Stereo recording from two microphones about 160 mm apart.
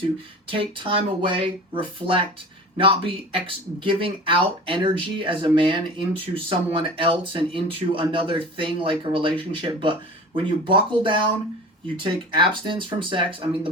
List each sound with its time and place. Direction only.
0.4 s speech: 35° right (ahead or behind)